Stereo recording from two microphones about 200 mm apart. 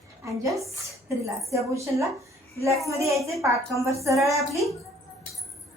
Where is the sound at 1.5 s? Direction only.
15° right (ahead or behind).